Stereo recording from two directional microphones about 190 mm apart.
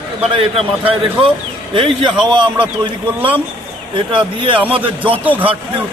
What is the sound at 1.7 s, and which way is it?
Speech, 25° right (ahead or behind).